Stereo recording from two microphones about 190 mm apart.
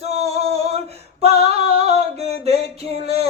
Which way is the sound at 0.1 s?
35° right (ahead or behind).